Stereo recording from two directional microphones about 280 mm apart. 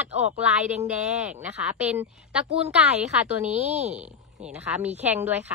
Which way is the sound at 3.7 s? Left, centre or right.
Right.